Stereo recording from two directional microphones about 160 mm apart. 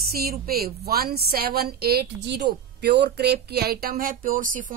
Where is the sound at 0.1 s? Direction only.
70° right (ahead or behind).